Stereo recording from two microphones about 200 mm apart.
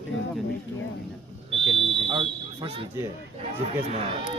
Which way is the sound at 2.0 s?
25° right (ahead or behind).